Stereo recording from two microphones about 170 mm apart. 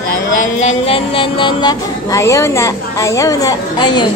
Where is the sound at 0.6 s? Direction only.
40° left (ahead or behind).